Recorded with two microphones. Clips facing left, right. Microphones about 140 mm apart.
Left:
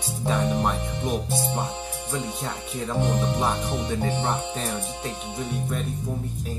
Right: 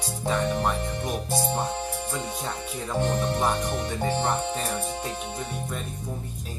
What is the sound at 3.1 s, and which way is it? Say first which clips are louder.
Speech: even; 15° left (ahead or behind).